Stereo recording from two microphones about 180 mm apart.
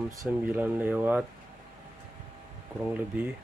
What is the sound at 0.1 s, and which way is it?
Speech, 15° right (ahead or behind).